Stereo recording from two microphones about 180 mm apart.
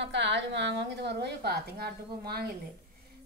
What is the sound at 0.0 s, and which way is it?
A woman's voice, 75° right (ahead or behind).